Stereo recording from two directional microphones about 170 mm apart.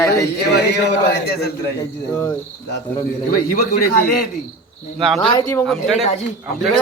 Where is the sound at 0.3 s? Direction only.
75° left (ahead or behind).